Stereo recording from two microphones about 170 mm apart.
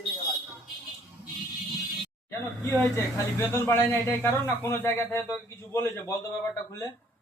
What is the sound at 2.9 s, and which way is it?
Speech, 15° left (ahead or behind).